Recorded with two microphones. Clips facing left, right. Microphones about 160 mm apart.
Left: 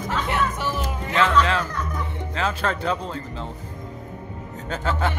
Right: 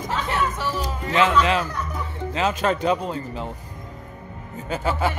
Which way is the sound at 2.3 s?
20° right (ahead or behind).